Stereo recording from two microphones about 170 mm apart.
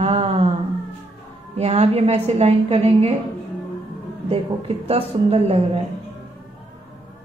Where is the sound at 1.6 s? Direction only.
40° right (ahead or behind).